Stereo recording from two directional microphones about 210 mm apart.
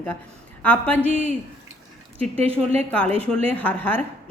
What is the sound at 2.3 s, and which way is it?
Speech, 30° right (ahead or behind).